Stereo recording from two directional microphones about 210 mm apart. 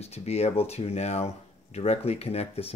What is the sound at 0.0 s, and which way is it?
Speech, 30° left (ahead or behind).